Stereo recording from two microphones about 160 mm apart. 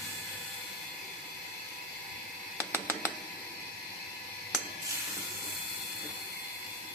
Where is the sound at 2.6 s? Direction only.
15° right (ahead or behind).